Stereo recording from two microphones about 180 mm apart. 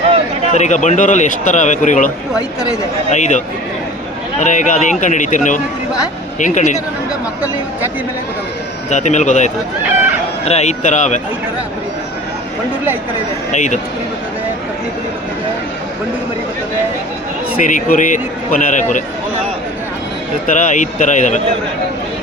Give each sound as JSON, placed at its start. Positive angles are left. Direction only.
{"t": 0.5, "sound": "a man's voice", "side_deg": 40}
{"t": 8.9, "sound": "speech", "side_deg": 40}
{"t": 9.8, "sound": "speech", "side_deg": -10}
{"t": 10.4, "sound": "speech", "side_deg": 35}
{"t": 13.5, "sound": "speech", "side_deg": 40}
{"t": 17.7, "sound": "a man's voice", "side_deg": 45}
{"t": 20.5, "sound": "a man's voice", "side_deg": 45}